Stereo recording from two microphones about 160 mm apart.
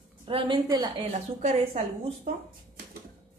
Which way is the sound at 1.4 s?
40° right (ahead or behind).